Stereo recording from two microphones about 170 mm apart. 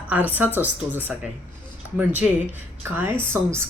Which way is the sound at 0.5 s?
10° right (ahead or behind).